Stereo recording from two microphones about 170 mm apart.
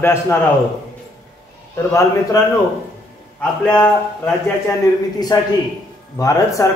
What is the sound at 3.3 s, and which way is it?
A man's voice, 5° left (ahead or behind).